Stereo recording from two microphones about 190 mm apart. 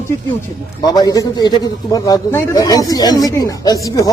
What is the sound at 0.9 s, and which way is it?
A man's voice, 20° left (ahead or behind).